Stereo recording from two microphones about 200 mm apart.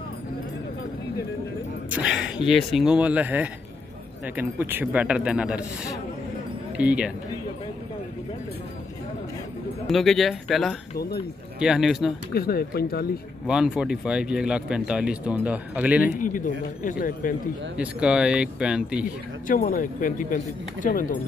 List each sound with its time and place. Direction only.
1.9 s speech: 10° right (ahead or behind)
6.8 s speech: 5° right (ahead or behind)
9.8 s speech: centre (ahead or behind)
11.0 s speech: 50° left (ahead or behind)
11.6 s speech: centre (ahead or behind)
12.4 s speech: 50° left (ahead or behind)
13.5 s speech: 5° right (ahead or behind)
16.2 s speech: 40° left (ahead or behind)
17.7 s speech: 5° right (ahead or behind)
19.4 s speech: 45° left (ahead or behind)